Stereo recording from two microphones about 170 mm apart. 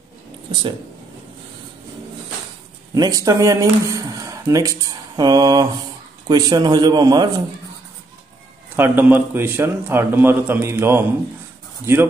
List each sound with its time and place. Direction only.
0.5 s speech: 30° right (ahead or behind)
2.9 s a man's voice: 20° right (ahead or behind)
8.7 s a man's voice: 15° right (ahead or behind)